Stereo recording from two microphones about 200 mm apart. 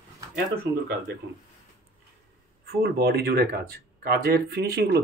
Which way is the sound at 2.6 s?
50° right (ahead or behind).